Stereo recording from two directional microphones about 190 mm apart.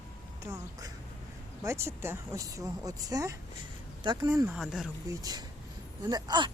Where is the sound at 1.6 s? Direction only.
15° right (ahead or behind).